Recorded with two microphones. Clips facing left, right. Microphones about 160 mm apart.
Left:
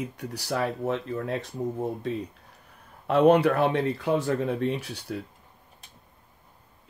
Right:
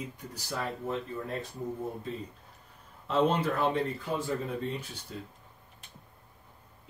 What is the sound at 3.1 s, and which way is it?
Speech, 65° left (ahead or behind).